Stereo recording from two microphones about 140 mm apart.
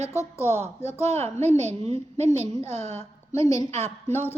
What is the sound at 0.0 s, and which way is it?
Speech, 20° left (ahead or behind).